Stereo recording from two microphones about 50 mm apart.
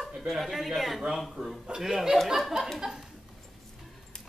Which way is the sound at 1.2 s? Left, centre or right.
Centre.